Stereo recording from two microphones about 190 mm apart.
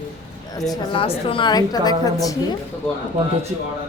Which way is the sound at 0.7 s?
30° left (ahead or behind).